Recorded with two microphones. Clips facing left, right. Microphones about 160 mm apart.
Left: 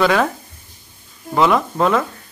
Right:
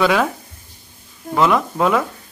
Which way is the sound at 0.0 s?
Centre (ahead or behind).